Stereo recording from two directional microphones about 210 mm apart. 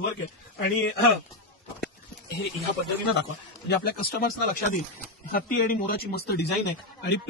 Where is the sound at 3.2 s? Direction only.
50° left (ahead or behind).